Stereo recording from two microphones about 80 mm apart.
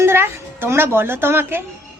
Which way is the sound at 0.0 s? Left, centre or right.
Right.